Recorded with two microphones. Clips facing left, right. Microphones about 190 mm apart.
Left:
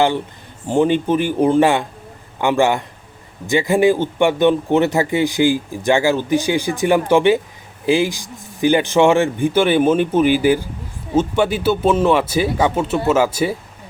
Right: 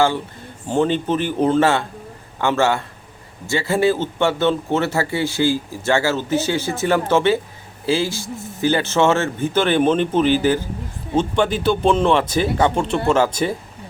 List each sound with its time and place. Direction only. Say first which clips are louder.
0.7 s speech: left 3 dB; 15° left (ahead or behind)